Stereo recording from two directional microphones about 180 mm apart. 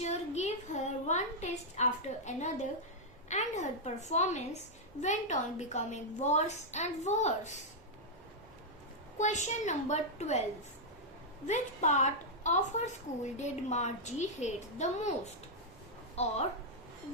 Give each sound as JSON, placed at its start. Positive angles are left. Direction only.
{"t": 0.0, "sound": "a woman's voice", "side_deg": 40}
{"t": 9.1, "sound": "a woman's voice", "side_deg": 40}
{"t": 11.4, "sound": "a woman's voice", "side_deg": 40}
{"t": 16.2, "sound": "a woman's voice", "side_deg": 35}